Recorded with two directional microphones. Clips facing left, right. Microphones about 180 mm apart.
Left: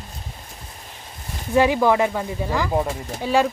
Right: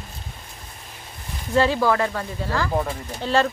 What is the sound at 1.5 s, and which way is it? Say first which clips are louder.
Speech: left 2 dB; 15° left (ahead or behind).